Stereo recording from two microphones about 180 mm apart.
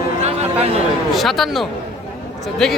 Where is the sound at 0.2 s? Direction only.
35° right (ahead or behind).